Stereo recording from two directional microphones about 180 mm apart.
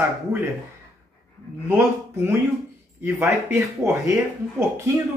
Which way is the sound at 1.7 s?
10° right (ahead or behind).